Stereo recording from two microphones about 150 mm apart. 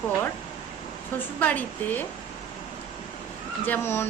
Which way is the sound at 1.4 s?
10° left (ahead or behind).